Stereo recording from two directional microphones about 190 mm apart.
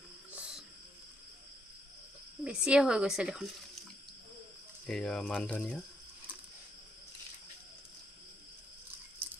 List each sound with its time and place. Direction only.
0.3 s cricket: 5° right (ahead or behind)
2.4 s speech: 5° right (ahead or behind)
4.8 s speech: 5° left (ahead or behind)